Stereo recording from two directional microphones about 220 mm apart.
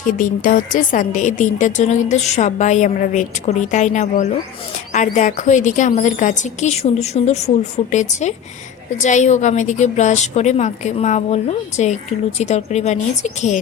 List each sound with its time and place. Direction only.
0.0 s a woman's voice: 40° left (ahead or behind)